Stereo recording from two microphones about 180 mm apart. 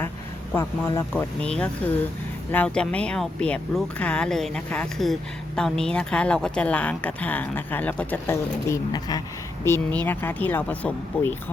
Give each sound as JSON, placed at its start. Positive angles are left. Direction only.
{"t": 0.5, "sound": "speech", "side_deg": 15}
{"t": 1.2, "sound": "speech", "side_deg": 5}
{"t": 9.6, "sound": "speech", "side_deg": 10}